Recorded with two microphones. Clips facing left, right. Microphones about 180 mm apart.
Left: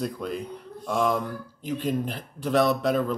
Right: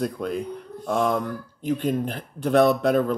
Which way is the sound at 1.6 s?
50° right (ahead or behind).